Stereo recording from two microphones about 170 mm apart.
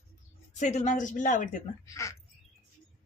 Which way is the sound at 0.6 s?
45° left (ahead or behind).